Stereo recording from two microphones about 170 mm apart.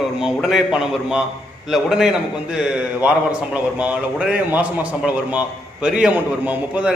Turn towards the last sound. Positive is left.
turn(degrees=-10)  # may be behind; listen again after turning